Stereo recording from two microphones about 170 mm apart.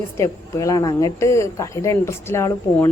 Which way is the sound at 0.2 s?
20° left (ahead or behind).